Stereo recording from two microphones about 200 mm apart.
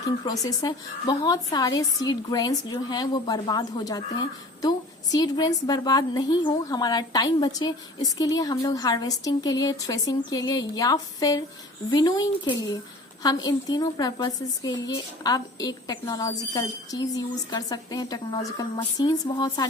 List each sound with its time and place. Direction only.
0.0 s a woman's voice: 20° left (ahead or behind)